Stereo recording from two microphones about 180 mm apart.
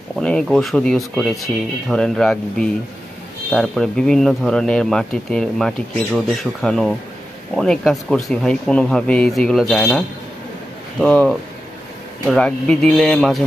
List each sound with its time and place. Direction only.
0.2 s speech: 5° left (ahead or behind)
11.0 s speech: 5° left (ahead or behind)